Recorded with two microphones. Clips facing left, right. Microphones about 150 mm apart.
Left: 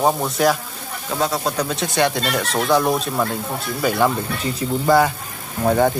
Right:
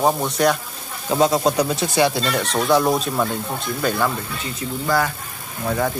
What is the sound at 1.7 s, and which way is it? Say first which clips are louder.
Speech: right 1 dB; 5° right (ahead or behind).